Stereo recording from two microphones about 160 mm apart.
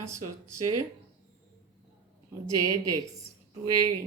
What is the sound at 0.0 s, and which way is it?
Speech, 15° right (ahead or behind).